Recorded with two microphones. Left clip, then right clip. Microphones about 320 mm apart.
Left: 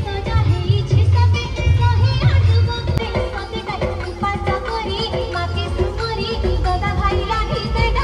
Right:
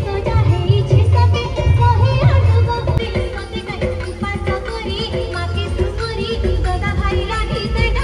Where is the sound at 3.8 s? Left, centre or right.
Left.